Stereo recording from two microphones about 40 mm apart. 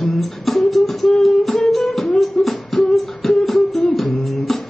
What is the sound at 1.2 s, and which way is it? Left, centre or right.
Music, centre.